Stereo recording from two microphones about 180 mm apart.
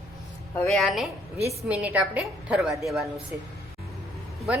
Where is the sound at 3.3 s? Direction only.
10° right (ahead or behind).